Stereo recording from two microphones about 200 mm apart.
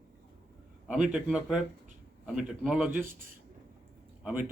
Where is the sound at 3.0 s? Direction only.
45° right (ahead or behind).